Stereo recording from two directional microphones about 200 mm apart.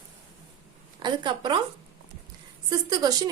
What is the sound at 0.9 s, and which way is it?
Speech, 25° right (ahead or behind).